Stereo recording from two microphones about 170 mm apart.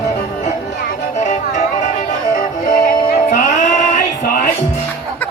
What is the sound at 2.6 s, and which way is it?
Music, 50° left (ahead or behind).